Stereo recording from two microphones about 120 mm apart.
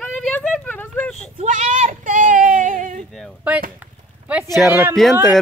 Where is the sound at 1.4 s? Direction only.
90° right.